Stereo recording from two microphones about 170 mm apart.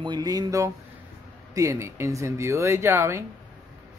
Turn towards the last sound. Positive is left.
turn(degrees=-15)  # may be behind; listen again after turning